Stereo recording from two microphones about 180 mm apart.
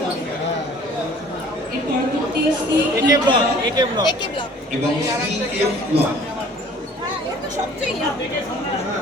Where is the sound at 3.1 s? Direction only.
25° right (ahead or behind).